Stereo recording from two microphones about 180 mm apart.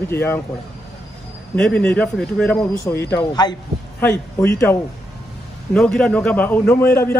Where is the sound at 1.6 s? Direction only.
5° left (ahead or behind).